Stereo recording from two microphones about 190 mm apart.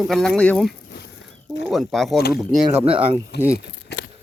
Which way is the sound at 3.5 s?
65° left (ahead or behind).